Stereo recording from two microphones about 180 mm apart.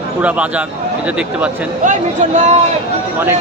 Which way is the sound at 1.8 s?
40° right (ahead or behind).